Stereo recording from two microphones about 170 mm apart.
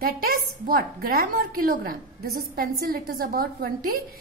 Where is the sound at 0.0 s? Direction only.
60° right (ahead or behind).